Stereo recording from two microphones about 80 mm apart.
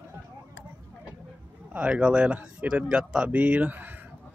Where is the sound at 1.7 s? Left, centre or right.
Centre.